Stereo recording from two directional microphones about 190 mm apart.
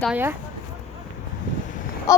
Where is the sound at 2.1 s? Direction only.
20° left (ahead or behind).